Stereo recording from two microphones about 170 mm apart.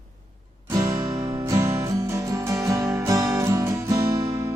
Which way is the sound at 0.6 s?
20° right (ahead or behind).